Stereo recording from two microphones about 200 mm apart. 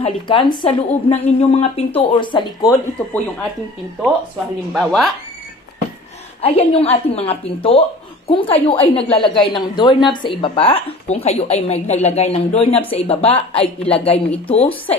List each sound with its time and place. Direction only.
0.0 s a woman's voice: 25° left (ahead or behind)
4.7 s speech: centre (ahead or behind)
6.4 s a woman's voice: 30° left (ahead or behind)